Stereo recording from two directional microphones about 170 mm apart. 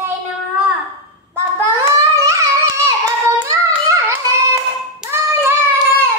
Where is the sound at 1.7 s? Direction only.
20° right (ahead or behind).